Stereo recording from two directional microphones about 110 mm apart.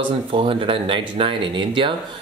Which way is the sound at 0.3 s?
55° right (ahead or behind).